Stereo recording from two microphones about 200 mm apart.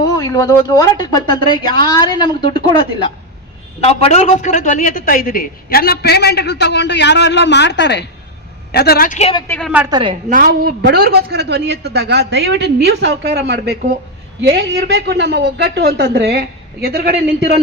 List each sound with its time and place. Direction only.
0.2 s speech: 15° left (ahead or behind)
3.8 s a man's voice: 30° left (ahead or behind); by 9.1 s 50° left (ahead or behind)
9.1 s speech: 30° left (ahead or behind)
9.5 s a woman's voice: 5° left (ahead or behind)
9.9 s a woman's voice: 25° right (ahead or behind)
10.2 s speech: 45° right (ahead or behind)